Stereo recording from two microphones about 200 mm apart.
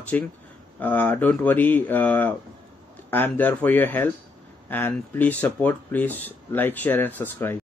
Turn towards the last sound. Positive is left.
turn(degrees=10)  # may be behind; listen again after turning